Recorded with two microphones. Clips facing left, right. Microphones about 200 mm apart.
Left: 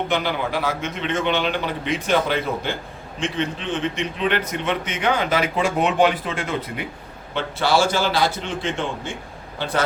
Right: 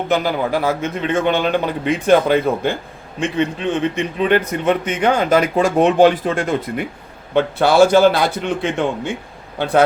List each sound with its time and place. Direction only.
0.1 s a man's voice: 40° right (ahead or behind)